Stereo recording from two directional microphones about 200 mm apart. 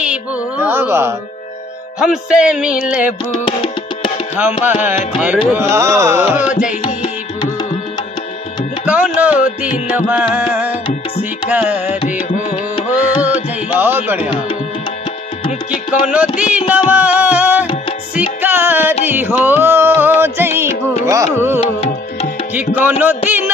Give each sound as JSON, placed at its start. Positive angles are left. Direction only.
{"t": 0.0, "sound": "speech", "side_deg": -5}
{"t": 2.0, "sound": "music", "side_deg": -5}
{"t": 3.4, "sound": "music", "side_deg": 25}
{"t": 4.6, "sound": "carnatic music", "side_deg": -10}
{"t": 6.8, "sound": "music", "side_deg": 25}
{"t": 8.8, "sound": "music", "side_deg": -5}
{"t": 10.9, "sound": "music", "side_deg": 35}
{"t": 11.5, "sound": "carnatic music", "side_deg": -10}
{"t": 12.2, "sound": "music", "side_deg": 40}
{"t": 13.2, "sound": "carnatic music", "side_deg": -10}
{"t": 15.7, "sound": "music", "side_deg": -5}
{"t": 22.8, "sound": "carnatic music", "side_deg": -10}